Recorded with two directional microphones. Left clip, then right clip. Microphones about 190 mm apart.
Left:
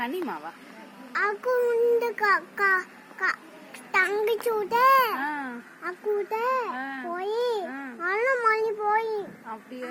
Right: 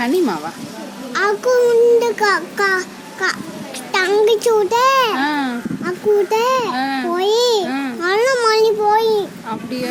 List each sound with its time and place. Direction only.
0.0 s a child's voice: 15° right (ahead or behind)
6.3 s babbling: 15° right (ahead or behind)
8.9 s a sound: 20° right (ahead or behind)